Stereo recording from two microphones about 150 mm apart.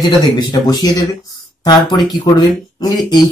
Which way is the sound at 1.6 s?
25° left (ahead or behind).